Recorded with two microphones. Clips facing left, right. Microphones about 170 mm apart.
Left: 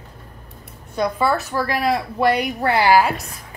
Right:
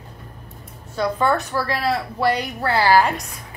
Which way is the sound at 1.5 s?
15° left (ahead or behind).